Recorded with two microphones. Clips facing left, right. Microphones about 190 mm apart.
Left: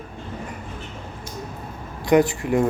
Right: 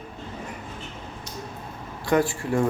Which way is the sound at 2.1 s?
20° left (ahead or behind).